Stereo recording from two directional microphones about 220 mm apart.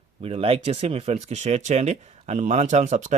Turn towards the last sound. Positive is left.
turn(degrees=-35)  # may be behind; listen again after turning